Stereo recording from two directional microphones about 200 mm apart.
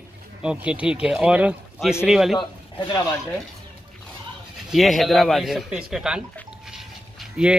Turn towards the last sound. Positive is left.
turn(degrees=-5)  # may be behind; listen again after turning